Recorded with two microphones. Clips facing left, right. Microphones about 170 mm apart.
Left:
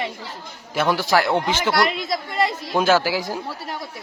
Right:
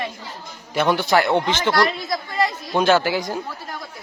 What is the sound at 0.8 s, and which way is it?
A man's voice, centre (ahead or behind).